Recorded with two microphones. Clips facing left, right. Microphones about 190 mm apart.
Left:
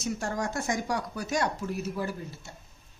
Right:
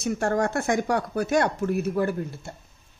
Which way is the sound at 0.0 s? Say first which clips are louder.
Right 7 dB; 55° right (ahead or behind).